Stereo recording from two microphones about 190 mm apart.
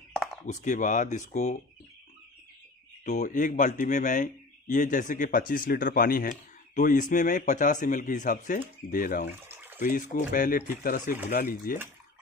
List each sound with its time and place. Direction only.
0.1 s chop: centre (ahead or behind)
0.5 s speech: 40° left (ahead or behind)
3.1 s speech: 40° left (ahead or behind)
9.4 s a sound: 10° right (ahead or behind)
9.8 s speech: 45° left (ahead or behind)